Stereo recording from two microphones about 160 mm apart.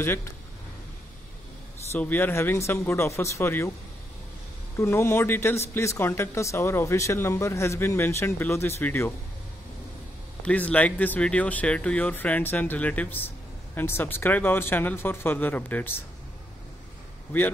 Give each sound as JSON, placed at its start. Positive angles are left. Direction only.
{"t": 0.0, "sound": "speech", "side_deg": 15}
{"t": 2.0, "sound": "speech", "side_deg": 10}
{"t": 4.7, "sound": "speech", "side_deg": 15}
{"t": 10.4, "sound": "speech", "side_deg": 10}